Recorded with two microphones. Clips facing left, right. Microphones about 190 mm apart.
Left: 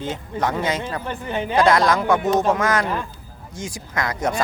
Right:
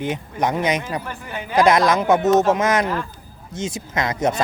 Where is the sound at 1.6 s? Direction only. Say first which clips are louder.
Right 2 dB; 20° right (ahead or behind).